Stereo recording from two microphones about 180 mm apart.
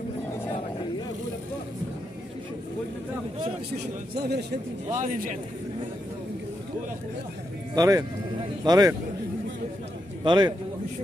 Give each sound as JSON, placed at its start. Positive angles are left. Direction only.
{"t": 3.7, "sound": "a man's voice", "side_deg": -65}
{"t": 4.9, "sound": "a man's voice", "side_deg": -45}
{"t": 7.7, "sound": "speech", "side_deg": -20}
{"t": 10.2, "sound": "speech", "side_deg": -25}